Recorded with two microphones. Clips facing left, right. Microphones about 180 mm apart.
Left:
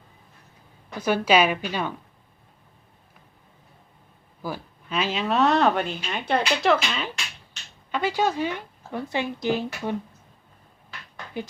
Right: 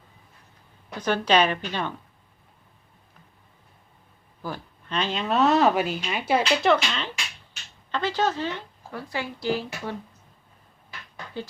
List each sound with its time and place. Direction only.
0.9 s a woman's voice: 10° left (ahead or behind)
4.4 s a woman's voice: 10° left (ahead or behind)